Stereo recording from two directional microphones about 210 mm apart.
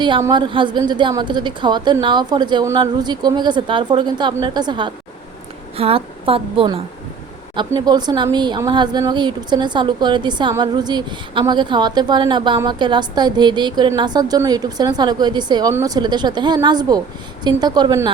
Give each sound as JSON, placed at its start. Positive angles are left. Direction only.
{"t": 0.0, "sound": "speech", "side_deg": -20}